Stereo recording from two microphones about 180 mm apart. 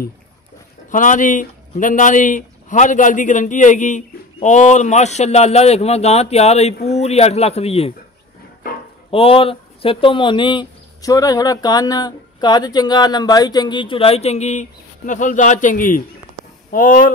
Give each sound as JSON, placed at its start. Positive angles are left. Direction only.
{"t": 0.9, "sound": "speech", "side_deg": 45}
{"t": 9.1, "sound": "speech", "side_deg": 30}